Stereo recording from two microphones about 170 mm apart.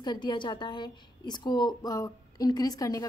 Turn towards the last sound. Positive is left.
turn(degrees=20)  # may be behind; listen again after turning